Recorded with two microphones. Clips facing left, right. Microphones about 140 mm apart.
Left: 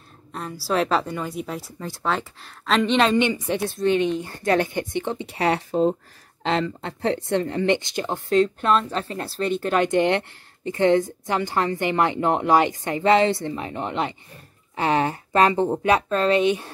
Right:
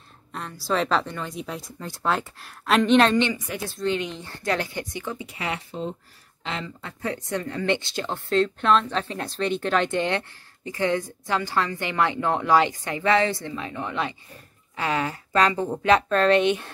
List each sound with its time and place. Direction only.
0.3 s a sound: 5° left (ahead or behind)
0.7 s speech: 5° left (ahead or behind)
3.2 s speech: 20° left (ahead or behind)
11.6 s speech: 50° left (ahead or behind)
11.9 s speech: 20° left (ahead or behind)
16.1 s speech: 5° left (ahead or behind)